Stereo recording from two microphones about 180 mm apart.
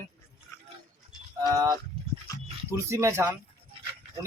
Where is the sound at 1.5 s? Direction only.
20° right (ahead or behind).